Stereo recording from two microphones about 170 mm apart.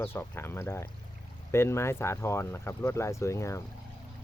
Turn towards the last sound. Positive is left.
turn(degrees=15)  # may be behind; listen again after turning